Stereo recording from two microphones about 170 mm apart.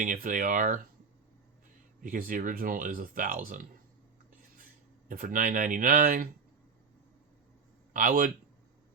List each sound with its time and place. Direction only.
0.0 s speech: 50° right (ahead or behind)
2.0 s speech: 55° right (ahead or behind)
7.9 s speech: 55° right (ahead or behind)